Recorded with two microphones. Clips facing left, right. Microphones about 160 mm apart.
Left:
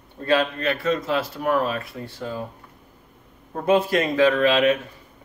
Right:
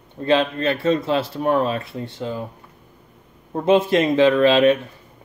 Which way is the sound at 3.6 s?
25° right (ahead or behind).